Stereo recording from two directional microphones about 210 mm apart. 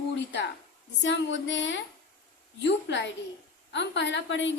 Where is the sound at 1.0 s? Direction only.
60° left (ahead or behind).